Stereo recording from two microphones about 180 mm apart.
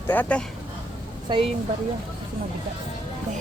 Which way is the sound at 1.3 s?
25° right (ahead or behind).